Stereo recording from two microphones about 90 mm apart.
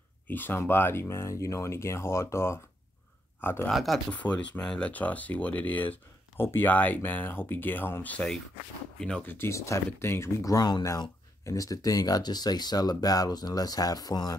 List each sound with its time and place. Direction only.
0.3 s speech: 20° left (ahead or behind)
3.7 s speech: centre (ahead or behind)
4.1 s speech: 15° left (ahead or behind)
9.5 s speech: 35° left (ahead or behind)